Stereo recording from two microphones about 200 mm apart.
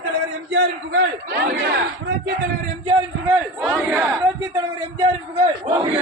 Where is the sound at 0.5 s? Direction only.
60° right (ahead or behind).